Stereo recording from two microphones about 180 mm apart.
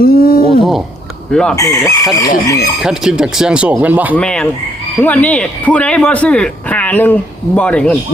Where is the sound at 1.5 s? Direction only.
20° left (ahead or behind).